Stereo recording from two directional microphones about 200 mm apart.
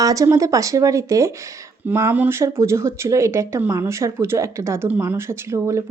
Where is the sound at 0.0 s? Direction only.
15° right (ahead or behind).